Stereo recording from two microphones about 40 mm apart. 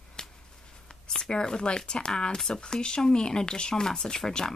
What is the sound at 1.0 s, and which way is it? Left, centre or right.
Speech, centre.